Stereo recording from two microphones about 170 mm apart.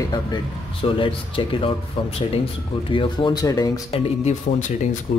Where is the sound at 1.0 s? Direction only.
30° left (ahead or behind).